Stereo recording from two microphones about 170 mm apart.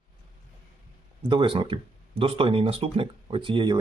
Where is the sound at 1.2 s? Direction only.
30° right (ahead or behind).